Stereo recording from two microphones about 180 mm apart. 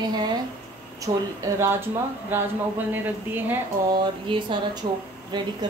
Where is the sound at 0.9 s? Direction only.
15° right (ahead or behind).